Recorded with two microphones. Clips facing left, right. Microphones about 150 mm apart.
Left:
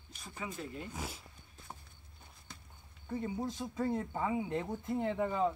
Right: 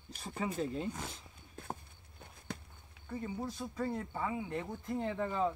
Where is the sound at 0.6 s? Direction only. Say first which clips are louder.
Right 7 dB; 25° right (ahead or behind).